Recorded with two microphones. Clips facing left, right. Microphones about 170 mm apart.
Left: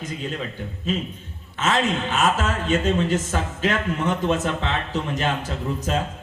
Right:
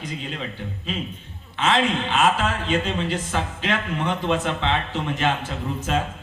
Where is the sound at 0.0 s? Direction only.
45° left (ahead or behind).